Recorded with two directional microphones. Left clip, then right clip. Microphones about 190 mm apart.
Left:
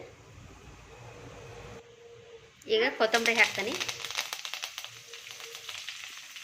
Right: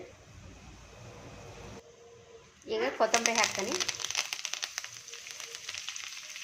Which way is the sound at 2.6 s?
Centre (ahead or behind).